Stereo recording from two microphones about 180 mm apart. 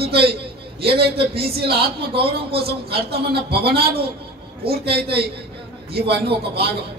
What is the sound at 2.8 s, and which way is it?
Speech, 60° right (ahead or behind).